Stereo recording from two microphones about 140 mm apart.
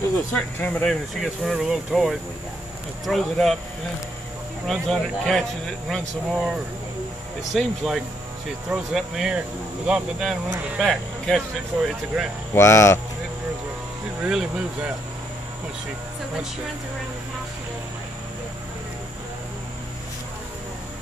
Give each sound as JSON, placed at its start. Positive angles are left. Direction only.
{"t": 0.3, "sound": "speech", "side_deg": 10}
{"t": 1.2, "sound": "speech", "side_deg": 0}
{"t": 4.6, "sound": "speech", "side_deg": 5}
{"t": 7.5, "sound": "speech", "side_deg": 0}
{"t": 12.5, "sound": "speech", "side_deg": 20}
{"t": 14.2, "sound": "speech", "side_deg": -5}